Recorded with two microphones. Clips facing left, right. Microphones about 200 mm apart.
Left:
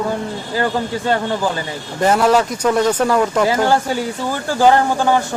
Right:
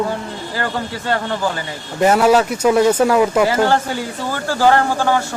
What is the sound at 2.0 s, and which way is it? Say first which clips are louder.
A man's voice: right 1 dB; 10° right (ahead or behind).